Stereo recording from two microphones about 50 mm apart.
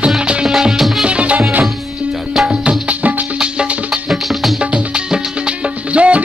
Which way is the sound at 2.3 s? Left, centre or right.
Centre.